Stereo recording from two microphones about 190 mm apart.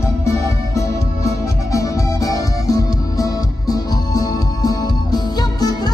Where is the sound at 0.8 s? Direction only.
15° left (ahead or behind).